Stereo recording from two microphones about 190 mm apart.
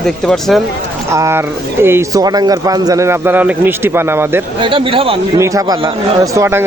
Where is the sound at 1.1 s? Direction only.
15° right (ahead or behind).